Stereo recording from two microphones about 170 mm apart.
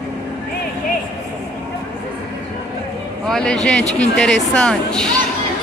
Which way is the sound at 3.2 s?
5° left (ahead or behind).